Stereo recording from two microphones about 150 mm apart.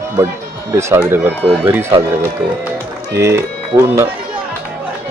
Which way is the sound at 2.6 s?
15° right (ahead or behind).